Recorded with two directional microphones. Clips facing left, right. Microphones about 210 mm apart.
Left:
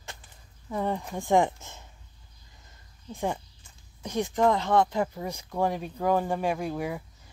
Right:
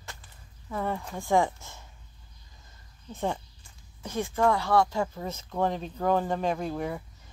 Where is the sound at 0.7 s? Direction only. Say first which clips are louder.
Left 2 dB; 15° left (ahead or behind).